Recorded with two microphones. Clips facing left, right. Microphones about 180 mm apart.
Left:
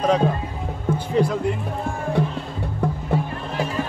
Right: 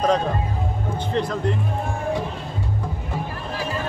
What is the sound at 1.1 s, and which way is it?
Speech, 10° left (ahead or behind).